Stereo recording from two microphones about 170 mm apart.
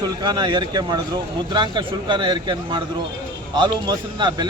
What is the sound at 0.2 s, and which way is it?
Speech, 25° right (ahead or behind).